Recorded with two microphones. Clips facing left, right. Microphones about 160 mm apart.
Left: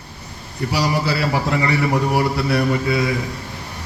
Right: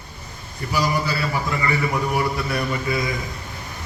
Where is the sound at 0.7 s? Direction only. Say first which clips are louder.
Left 2 dB; 65° left (ahead or behind).